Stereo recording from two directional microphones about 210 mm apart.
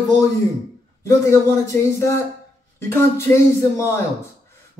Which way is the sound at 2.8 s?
10° left (ahead or behind).